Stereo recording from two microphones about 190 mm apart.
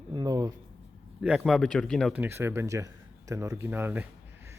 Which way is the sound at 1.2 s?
5° right (ahead or behind).